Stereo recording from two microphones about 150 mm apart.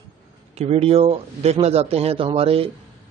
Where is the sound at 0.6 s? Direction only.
45° right (ahead or behind).